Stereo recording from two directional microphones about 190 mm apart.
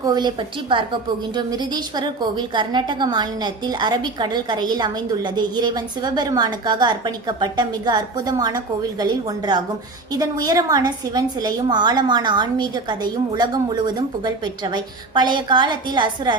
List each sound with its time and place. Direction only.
0.0 s a woman's voice: 20° right (ahead or behind)